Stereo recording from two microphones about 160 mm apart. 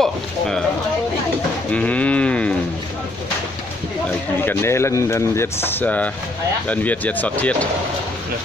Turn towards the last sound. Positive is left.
turn(degrees=10)  # may be behind; listen again after turning